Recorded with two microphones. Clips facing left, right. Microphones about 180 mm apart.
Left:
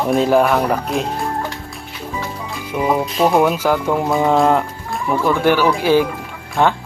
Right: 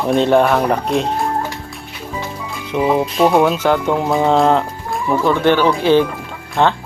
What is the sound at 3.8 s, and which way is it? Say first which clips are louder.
Speech: right 1 dB; 20° right (ahead or behind).